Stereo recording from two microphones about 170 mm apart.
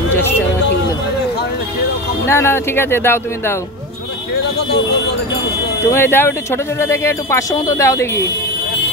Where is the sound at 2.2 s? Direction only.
15° left (ahead or behind).